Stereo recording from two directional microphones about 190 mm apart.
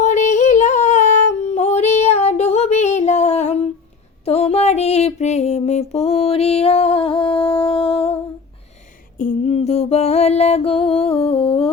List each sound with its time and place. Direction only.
0.0 s music: 40° left (ahead or behind)
4.3 s a sound: 30° left (ahead or behind)
9.1 s music: 40° left (ahead or behind)